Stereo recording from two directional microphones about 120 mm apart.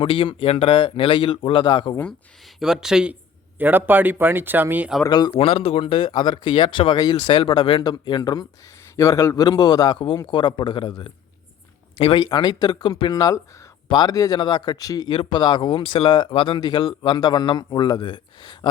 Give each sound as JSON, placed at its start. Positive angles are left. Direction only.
{"t": 0.0, "sound": "speech", "side_deg": 45}
{"t": 2.6, "sound": "speech", "side_deg": -5}
{"t": 5.0, "sound": "speech", "side_deg": 35}
{"t": 5.4, "sound": "speech", "side_deg": 50}
{"t": 12.3, "sound": "speech", "side_deg": 35}